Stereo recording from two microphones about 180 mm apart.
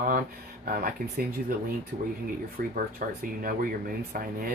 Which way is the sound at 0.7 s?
55° right (ahead or behind).